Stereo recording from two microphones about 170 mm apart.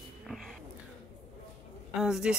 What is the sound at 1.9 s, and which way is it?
Speech, 5° right (ahead or behind).